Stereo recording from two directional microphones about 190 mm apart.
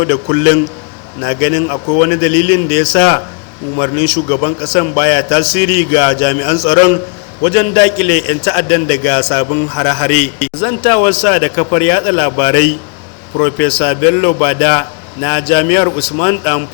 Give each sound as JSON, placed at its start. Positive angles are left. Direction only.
{"t": 0.0, "sound": "a man's voice", "side_deg": 25}